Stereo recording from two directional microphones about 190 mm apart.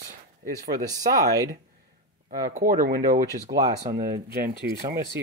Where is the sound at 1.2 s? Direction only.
15° right (ahead or behind).